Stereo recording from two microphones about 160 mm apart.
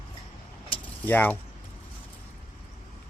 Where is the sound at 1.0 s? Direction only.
10° left (ahead or behind).